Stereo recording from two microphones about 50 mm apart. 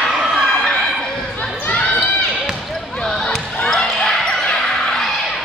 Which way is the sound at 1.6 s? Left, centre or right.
Left.